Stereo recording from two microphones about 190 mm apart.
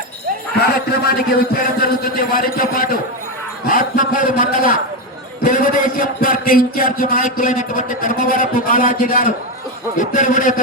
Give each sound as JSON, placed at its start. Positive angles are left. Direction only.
{"t": 0.6, "sound": "a man's voice", "side_deg": 55}